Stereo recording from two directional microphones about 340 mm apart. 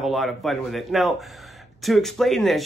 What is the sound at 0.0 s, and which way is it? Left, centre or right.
Speech, centre.